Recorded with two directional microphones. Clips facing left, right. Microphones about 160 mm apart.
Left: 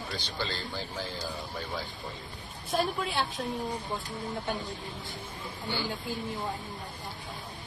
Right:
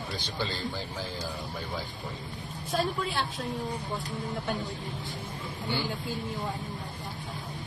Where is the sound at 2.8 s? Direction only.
10° left (ahead or behind).